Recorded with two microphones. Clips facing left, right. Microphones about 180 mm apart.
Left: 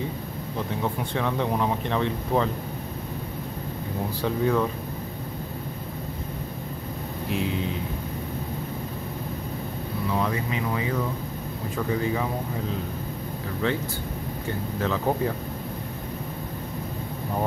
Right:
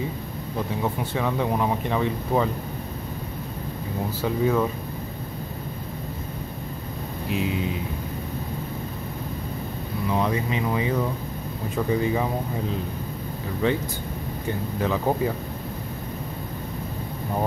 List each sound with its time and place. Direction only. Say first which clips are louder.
0.8 s speech: right 1 dB; 5° right (ahead or behind)
4.2 s speech: right 1 dB; 5° right (ahead or behind)
7.2 s speech: right 1 dB; 5° right (ahead or behind)
10.1 s speech: right 3 dB; 20° right (ahead or behind)
13.6 s speech: right 3 dB; 15° right (ahead or behind)